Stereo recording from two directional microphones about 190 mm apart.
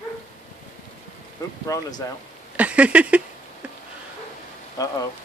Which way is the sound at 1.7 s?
20° left (ahead or behind).